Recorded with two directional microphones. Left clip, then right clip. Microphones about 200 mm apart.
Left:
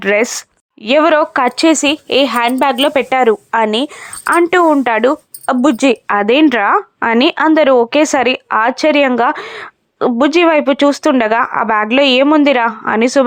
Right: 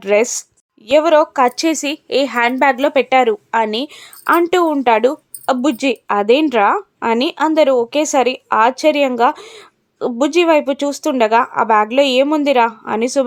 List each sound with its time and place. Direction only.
0.0 s speech: 15° left (ahead or behind)